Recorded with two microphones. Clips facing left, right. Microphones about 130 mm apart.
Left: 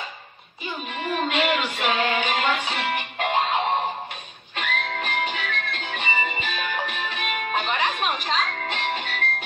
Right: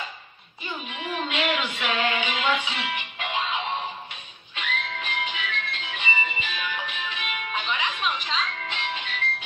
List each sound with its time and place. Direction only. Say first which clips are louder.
0.8 s music: left 5 dB; 45° left (ahead or behind)